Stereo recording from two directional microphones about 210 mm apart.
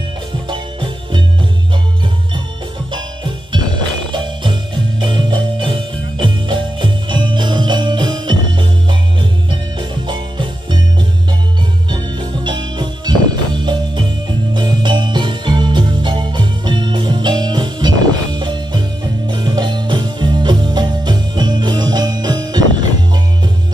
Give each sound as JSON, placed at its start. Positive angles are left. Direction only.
{"t": 0.5, "sound": "music", "side_deg": -20}
{"t": 2.9, "sound": "music", "side_deg": -20}
{"t": 11.9, "sound": "music", "side_deg": -20}
{"t": 14.5, "sound": "jingle bell", "side_deg": -20}